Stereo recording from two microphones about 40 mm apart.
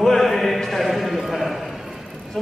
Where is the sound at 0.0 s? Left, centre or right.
Centre.